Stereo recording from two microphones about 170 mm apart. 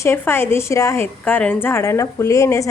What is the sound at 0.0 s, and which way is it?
A woman's voice, 15° left (ahead or behind).